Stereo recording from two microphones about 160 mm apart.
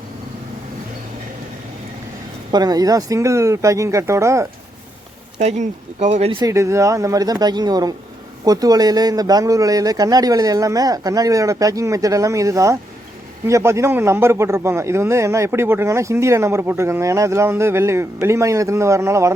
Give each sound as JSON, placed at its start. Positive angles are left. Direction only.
{"t": 2.5, "sound": "speech", "side_deg": -25}
{"t": 5.4, "sound": "speech", "side_deg": -45}
{"t": 6.3, "sound": "speech", "side_deg": -20}